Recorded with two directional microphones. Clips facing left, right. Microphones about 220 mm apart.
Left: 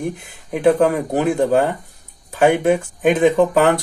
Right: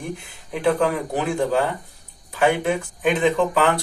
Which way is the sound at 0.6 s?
45° left (ahead or behind).